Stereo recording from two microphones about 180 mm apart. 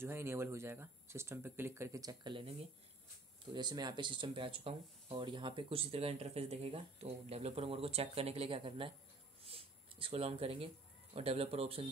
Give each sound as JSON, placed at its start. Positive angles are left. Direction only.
{"t": 0.0, "sound": "speech", "side_deg": -15}
{"t": 3.5, "sound": "speech", "side_deg": -20}